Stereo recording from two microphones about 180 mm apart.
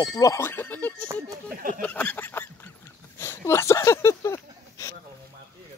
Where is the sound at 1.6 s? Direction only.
50° right (ahead or behind).